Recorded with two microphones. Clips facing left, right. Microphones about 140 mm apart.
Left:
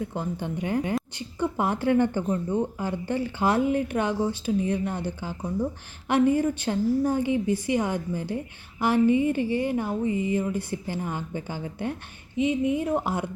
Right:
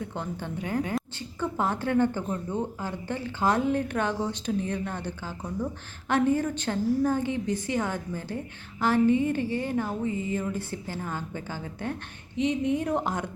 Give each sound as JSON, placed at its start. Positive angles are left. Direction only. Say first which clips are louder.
{"t": 0.1, "sound": "a woman's voice", "louder": "left 3 dB", "side_deg": 10}